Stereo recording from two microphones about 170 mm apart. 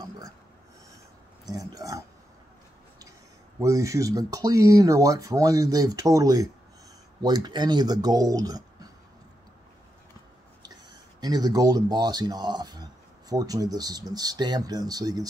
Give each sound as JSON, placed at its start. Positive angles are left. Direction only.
{"t": 1.4, "sound": "speech", "side_deg": -20}
{"t": 3.5, "sound": "speech", "side_deg": -20}
{"t": 11.1, "sound": "speech", "side_deg": -25}